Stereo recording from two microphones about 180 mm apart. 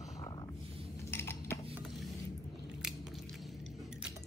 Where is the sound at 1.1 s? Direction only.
15° left (ahead or behind).